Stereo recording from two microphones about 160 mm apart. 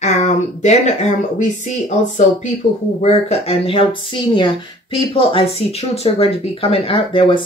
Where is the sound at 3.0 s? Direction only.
40° left (ahead or behind).